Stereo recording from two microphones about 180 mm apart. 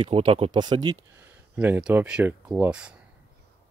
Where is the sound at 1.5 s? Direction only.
10° right (ahead or behind).